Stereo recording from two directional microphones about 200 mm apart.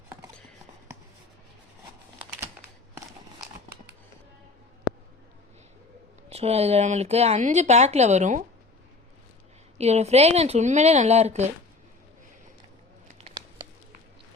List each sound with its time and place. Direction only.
6.2 s speech: 30° right (ahead or behind)
9.7 s speech: 30° right (ahead or behind)